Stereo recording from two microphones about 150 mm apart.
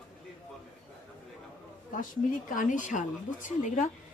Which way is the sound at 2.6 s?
60° left (ahead or behind).